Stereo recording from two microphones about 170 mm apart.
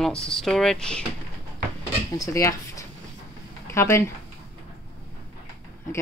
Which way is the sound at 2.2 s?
20° left (ahead or behind).